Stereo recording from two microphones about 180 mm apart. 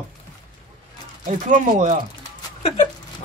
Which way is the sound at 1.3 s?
45° right (ahead or behind).